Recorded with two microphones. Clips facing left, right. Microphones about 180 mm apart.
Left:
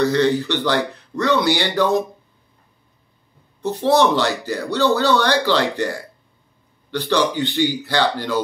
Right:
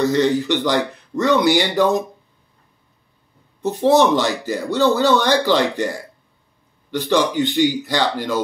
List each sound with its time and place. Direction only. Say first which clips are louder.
0.0 s speech: even; 15° right (ahead or behind)
3.6 s speech: right 2 dB; 20° right (ahead or behind)
6.9 s speech: right 1 dB; 15° right (ahead or behind)